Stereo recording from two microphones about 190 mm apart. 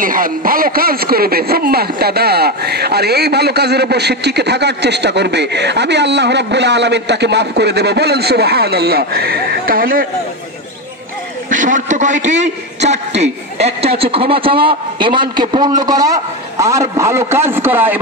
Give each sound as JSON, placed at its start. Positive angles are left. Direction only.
{"t": 0.0, "sound": "speech", "side_deg": -45}
{"t": 11.5, "sound": "a man's voice", "side_deg": -40}